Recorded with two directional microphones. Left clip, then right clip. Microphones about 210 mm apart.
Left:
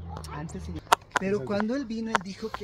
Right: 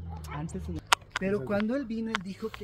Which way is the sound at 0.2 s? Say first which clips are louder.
Right 1 dB; 40° right (ahead or behind).